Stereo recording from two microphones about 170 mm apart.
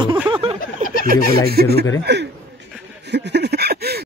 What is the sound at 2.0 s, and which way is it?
Chuckle, 85° right.